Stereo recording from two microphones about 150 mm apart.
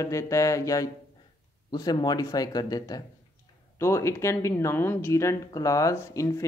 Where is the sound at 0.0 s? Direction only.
20° left (ahead or behind).